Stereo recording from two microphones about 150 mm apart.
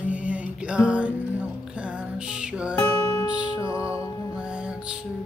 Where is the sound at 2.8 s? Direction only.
20° left (ahead or behind).